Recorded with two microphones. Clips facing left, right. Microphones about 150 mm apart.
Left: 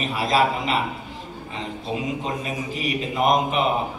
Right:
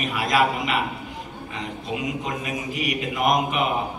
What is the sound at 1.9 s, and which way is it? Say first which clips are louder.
A man's voice: left 1 dB; 30° left (ahead or behind).